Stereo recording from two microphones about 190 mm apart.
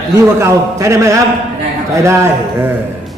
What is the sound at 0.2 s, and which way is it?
A man's voice, 15° right (ahead or behind).